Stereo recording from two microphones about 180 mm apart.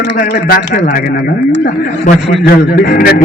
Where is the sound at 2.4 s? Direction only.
55° left (ahead or behind).